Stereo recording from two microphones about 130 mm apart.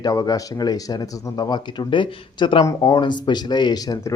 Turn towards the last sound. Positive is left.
turn(degrees=30)  # may be behind; listen again after turning